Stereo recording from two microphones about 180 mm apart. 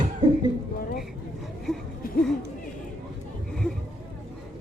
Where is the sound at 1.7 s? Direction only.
5° left (ahead or behind).